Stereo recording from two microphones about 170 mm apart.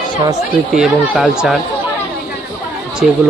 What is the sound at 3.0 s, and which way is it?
Speech, centre (ahead or behind).